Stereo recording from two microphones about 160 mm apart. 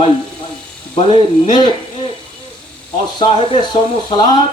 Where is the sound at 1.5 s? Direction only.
30° left (ahead or behind).